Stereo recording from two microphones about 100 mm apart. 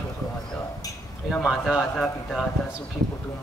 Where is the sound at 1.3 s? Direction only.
Centre (ahead or behind).